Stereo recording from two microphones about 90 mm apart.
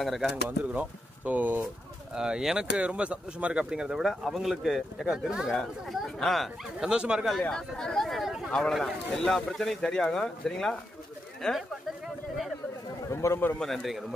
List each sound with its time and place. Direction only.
0.0 s speech: centre (ahead or behind)
0.3 s speech: 15° right (ahead or behind)
2.1 s speech: 10° right (ahead or behind)
7.2 s speech: 5° left (ahead or behind)
13.1 s a man's voice: 30° left (ahead or behind)
13.6 s speech: centre (ahead or behind)